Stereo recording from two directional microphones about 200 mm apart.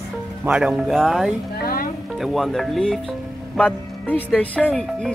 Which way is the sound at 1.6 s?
45° left (ahead or behind).